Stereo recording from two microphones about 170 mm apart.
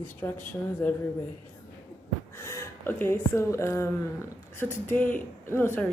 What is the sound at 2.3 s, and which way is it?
A woman's voice, 15° left (ahead or behind).